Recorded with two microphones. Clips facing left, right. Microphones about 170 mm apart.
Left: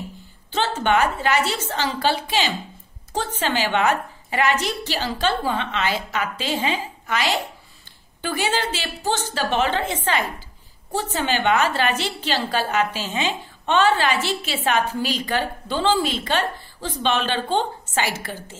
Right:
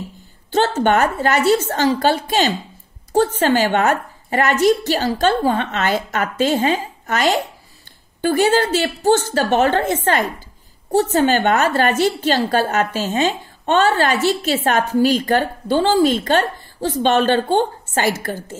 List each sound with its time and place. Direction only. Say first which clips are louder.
0.5 s a woman's voice: right 5 dB; 45° right (ahead or behind)